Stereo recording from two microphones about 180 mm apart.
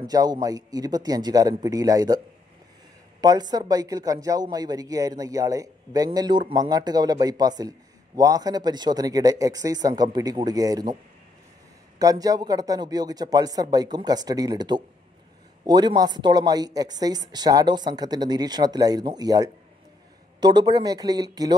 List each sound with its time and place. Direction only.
0.0 s speech: 20° right (ahead or behind)
12.0 s speech: 20° right (ahead or behind)